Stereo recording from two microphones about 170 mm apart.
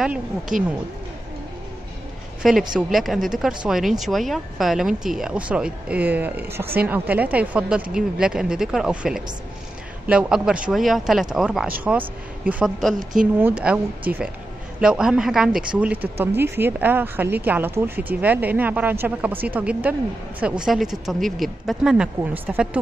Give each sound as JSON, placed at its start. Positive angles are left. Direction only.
{"t": 0.5, "sound": "speech", "side_deg": -50}
{"t": 2.7, "sound": "speech", "side_deg": 0}